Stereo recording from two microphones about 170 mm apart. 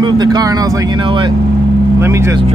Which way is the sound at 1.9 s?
15° right (ahead or behind).